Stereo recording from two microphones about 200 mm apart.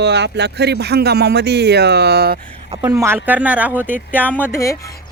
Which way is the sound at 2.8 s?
15° right (ahead or behind).